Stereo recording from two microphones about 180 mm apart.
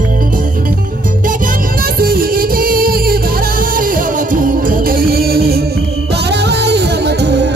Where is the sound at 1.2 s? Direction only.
50° right (ahead or behind).